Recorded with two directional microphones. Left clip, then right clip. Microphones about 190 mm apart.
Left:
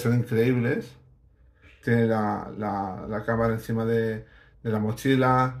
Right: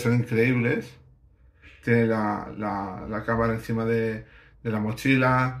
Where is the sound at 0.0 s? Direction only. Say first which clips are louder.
Right 1 dB; 30° left (ahead or behind).